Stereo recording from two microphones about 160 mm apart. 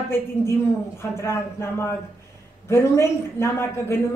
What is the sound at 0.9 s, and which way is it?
A woman's voice, 15° left (ahead or behind).